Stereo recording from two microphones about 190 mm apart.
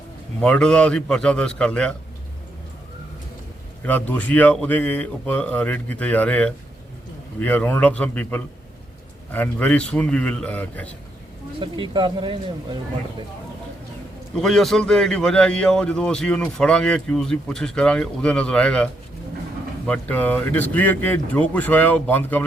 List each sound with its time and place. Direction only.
0.4 s a man's voice: 5° left (ahead or behind)
3.8 s speech: 10° left (ahead or behind)
11.6 s speech: 25° right (ahead or behind)
14.3 s a man's voice: centre (ahead or behind)
19.9 s speech: 10° left (ahead or behind)